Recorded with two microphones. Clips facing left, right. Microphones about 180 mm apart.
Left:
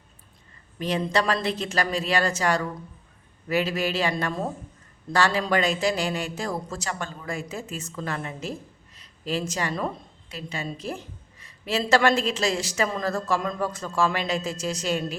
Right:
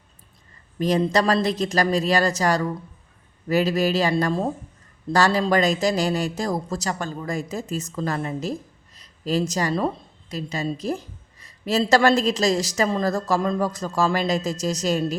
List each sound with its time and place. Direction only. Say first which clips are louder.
0.8 s a woman's voice: right 5 dB; 40° right (ahead or behind)